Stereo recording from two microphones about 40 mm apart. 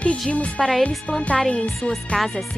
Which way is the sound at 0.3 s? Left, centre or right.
Left.